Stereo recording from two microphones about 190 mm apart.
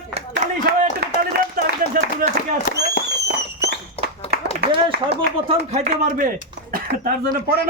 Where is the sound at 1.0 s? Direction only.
60° right (ahead or behind).